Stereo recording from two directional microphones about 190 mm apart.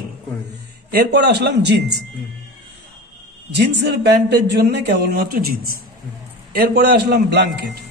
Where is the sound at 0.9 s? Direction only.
60° right (ahead or behind).